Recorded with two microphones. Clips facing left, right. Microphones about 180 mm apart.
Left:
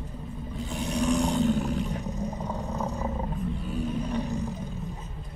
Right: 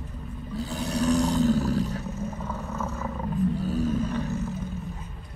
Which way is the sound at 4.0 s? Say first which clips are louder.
Right 1 dB; 15° left (ahead or behind).